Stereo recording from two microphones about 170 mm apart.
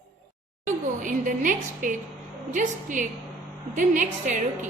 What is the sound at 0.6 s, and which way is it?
A woman's voice, 50° right (ahead or behind).